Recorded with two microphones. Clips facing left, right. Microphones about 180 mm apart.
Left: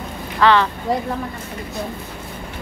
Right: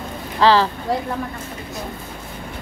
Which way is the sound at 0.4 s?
30° right (ahead or behind).